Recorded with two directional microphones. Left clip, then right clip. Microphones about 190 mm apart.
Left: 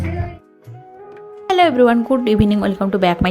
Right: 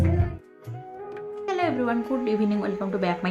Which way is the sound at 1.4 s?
45° left (ahead or behind).